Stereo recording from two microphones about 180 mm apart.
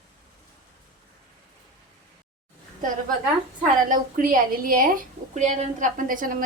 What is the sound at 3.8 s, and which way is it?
A woman's voice, 45° right (ahead or behind).